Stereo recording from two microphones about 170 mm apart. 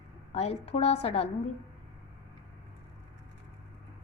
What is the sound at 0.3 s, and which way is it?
Speech, 35° left (ahead or behind).